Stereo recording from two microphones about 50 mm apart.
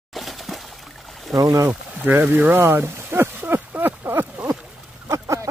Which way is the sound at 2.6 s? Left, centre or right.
Right.